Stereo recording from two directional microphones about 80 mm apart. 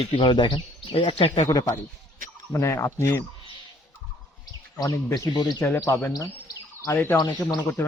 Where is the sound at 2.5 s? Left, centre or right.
Left.